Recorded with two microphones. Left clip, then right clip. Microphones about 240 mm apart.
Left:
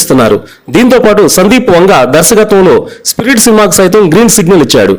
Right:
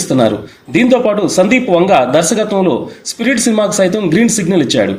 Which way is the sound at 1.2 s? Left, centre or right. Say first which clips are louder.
Left 6 dB; left.